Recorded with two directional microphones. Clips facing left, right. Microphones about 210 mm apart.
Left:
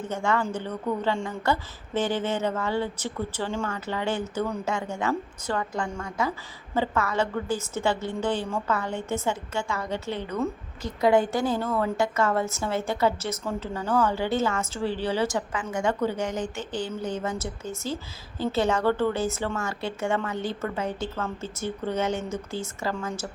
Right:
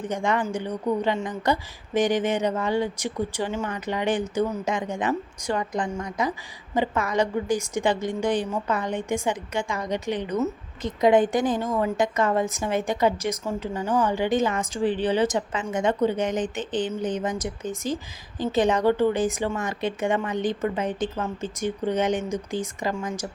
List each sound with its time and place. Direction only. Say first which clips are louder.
0.0 s a woman's voice: right 1 dB; 15° right (ahead or behind)